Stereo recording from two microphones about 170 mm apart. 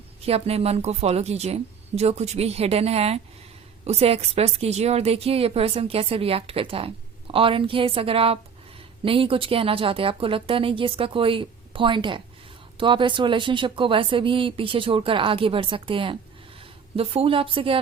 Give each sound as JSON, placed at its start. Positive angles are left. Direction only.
{"t": 0.3, "sound": "a woman's voice", "side_deg": -35}